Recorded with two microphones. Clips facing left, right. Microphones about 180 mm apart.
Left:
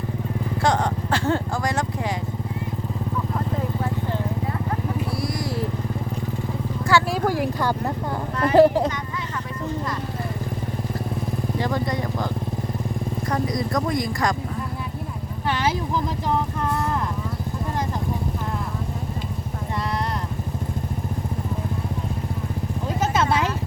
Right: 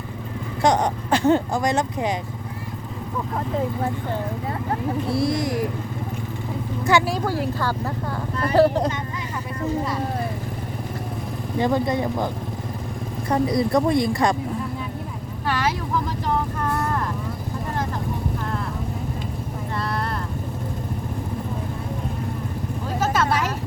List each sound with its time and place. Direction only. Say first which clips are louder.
0.6 s speech: right 3 dB; 20° right (ahead or behind)
5.1 s a sound: right 5 dB; 25° right (ahead or behind)
6.9 s speech: right 1 dB; 20° right (ahead or behind)
7.3 s speech: left 2 dB; 15° left (ahead or behind)
11.6 s speech: right 6 dB; 20° right (ahead or behind)
13.3 s speech: right 6 dB; 30° right (ahead or behind)
23.0 s a sound: right 1 dB; 20° left (ahead or behind)